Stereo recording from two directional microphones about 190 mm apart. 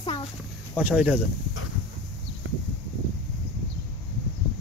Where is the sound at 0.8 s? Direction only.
5° right (ahead or behind).